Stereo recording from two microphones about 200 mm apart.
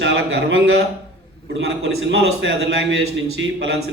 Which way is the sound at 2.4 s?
65° right (ahead or behind).